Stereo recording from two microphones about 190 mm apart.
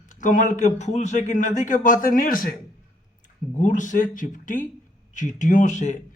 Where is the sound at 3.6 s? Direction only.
40° left (ahead or behind).